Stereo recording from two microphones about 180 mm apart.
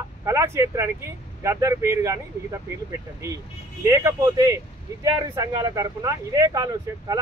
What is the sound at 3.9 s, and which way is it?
Speech, 20° right (ahead or behind).